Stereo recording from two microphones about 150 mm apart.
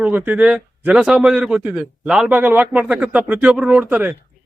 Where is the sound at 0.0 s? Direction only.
10° right (ahead or behind).